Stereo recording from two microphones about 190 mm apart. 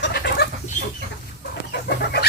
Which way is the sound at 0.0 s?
60° left (ahead or behind).